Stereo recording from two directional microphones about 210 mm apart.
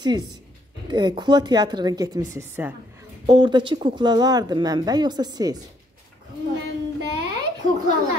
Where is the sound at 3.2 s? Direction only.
20° right (ahead or behind).